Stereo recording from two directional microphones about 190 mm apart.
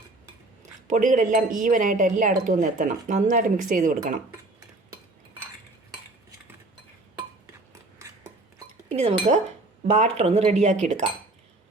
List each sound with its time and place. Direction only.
0.9 s speech: 40° right (ahead or behind)
8.9 s speech: 35° right (ahead or behind)